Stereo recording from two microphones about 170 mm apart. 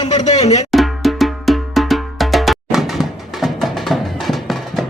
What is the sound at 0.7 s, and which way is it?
Cowbell, centre (ahead or behind).